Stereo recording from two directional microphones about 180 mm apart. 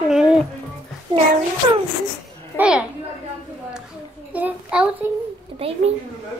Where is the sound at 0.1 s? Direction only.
5° right (ahead or behind).